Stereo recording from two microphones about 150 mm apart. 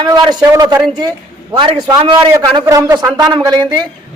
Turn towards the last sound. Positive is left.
turn(degrees=-30)  # may be behind; listen again after turning